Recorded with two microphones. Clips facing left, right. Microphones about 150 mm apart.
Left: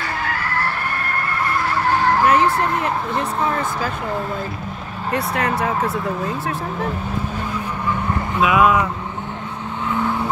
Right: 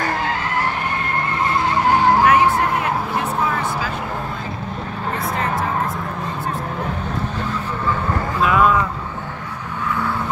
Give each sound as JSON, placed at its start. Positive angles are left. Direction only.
{"t": 0.3, "sound": "skidding", "side_deg": -15}
{"t": 5.1, "sound": "vehicle", "side_deg": 70}
{"t": 8.4, "sound": "speech", "side_deg": 10}